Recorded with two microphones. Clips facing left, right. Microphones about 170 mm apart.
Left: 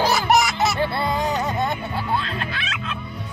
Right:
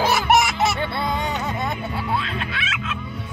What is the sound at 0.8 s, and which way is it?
Music, centre (ahead or behind).